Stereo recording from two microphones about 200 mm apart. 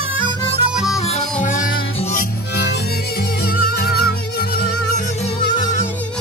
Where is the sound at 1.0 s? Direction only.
35° left (ahead or behind).